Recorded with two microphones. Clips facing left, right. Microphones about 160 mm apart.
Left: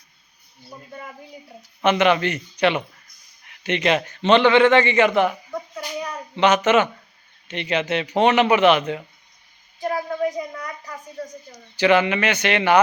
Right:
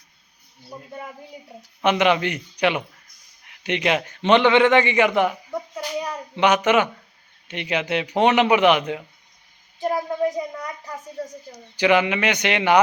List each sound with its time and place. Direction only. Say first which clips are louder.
0.7 s a man's voice: right 2 dB; 5° right (ahead or behind)